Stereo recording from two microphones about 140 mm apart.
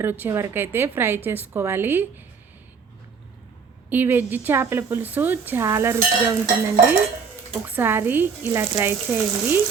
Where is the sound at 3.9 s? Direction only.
15° right (ahead or behind).